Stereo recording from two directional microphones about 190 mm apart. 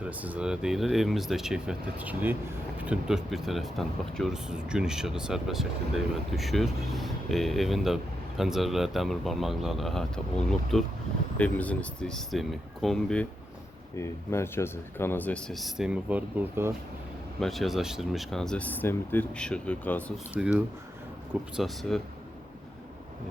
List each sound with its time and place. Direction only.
0.0 s speech: 5° right (ahead or behind)
13.9 s speech: 15° left (ahead or behind); by 16.7 s 10° right (ahead or behind)
17.4 s speech: centre (ahead or behind)
20.3 s speech: 5° right (ahead or behind)